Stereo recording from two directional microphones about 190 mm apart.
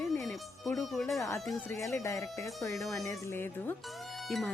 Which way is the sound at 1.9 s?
15° left (ahead or behind).